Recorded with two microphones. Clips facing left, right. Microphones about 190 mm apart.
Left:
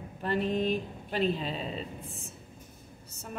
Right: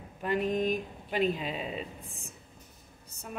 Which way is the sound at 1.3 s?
10° right (ahead or behind).